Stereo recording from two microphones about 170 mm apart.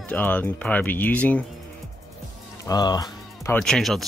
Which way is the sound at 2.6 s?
20° left (ahead or behind).